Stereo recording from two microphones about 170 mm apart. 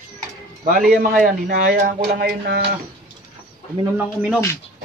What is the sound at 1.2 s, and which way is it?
Speech, 60° right (ahead or behind).